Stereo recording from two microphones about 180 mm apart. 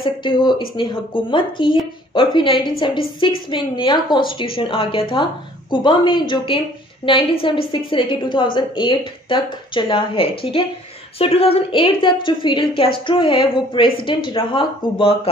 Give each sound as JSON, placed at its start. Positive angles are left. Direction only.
{"t": 0.0, "sound": "a woman's voice", "side_deg": 25}